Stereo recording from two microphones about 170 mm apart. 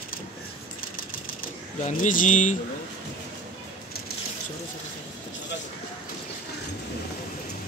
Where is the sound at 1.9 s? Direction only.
50° left (ahead or behind).